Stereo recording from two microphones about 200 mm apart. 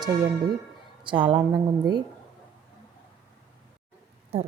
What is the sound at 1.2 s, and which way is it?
Speech, 10° right (ahead or behind).